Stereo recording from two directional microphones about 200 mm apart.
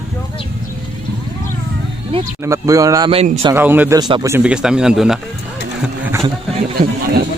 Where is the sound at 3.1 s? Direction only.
30° right (ahead or behind).